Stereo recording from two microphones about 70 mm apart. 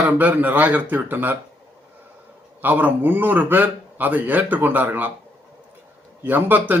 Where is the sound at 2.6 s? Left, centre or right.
Right.